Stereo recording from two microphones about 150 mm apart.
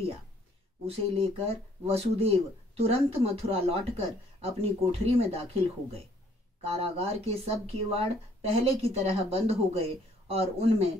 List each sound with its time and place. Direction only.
0.8 s speech: 40° right (ahead or behind)